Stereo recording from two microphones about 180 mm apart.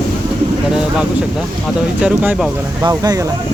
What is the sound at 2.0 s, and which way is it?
Speech, 10° right (ahead or behind).